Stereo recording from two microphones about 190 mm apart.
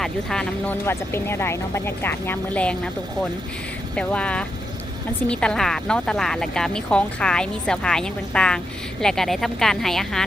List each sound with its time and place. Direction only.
0.0 s speech: 5° left (ahead or behind)
3.9 s speech: 5° left (ahead or behind)